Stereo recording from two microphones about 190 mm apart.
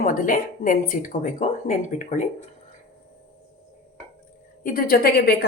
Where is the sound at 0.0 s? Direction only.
45° left (ahead or behind).